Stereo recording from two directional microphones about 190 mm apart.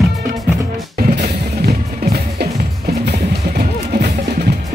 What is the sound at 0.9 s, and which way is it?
Music, 50° right (ahead or behind).